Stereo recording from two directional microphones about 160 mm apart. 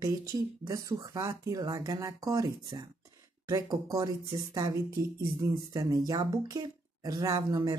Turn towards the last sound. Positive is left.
turn(degrees=-20)  # may be behind; listen again after turning